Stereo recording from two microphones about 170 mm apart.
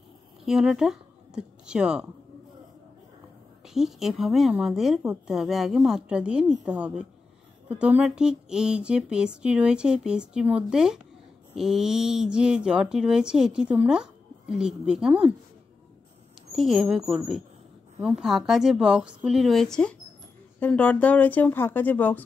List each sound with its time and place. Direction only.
0.5 s speech: 5° right (ahead or behind)
3.6 s speech: centre (ahead or behind)
16.5 s speech: centre (ahead or behind)